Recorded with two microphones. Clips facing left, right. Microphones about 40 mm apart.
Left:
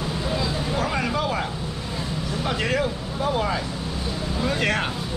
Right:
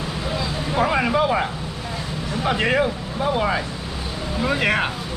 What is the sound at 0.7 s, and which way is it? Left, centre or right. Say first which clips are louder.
Speech: right 8 dB; right.